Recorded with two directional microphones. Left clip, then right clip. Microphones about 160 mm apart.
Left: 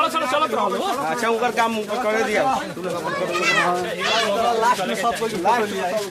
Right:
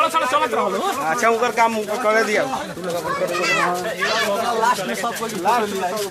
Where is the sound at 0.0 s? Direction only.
20° right (ahead or behind).